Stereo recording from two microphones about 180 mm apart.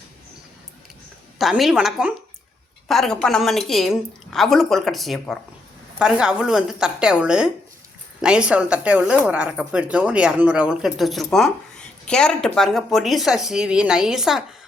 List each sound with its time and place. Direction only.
1.4 s speech: centre (ahead or behind)